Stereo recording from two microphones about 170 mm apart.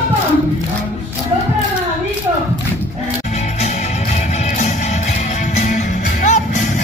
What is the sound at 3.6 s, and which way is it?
Music, 40° left (ahead or behind).